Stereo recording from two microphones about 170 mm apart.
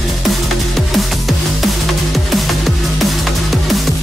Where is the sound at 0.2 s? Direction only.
Centre (ahead or behind).